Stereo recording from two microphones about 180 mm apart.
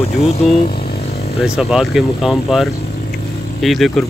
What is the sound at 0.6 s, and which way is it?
Vehicle, 60° left (ahead or behind).